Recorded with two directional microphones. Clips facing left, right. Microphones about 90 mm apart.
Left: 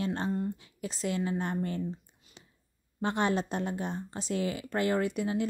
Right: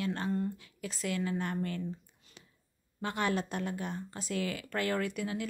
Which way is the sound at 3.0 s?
25° left (ahead or behind).